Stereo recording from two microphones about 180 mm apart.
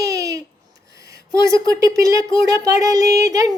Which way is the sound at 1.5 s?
15° right (ahead or behind).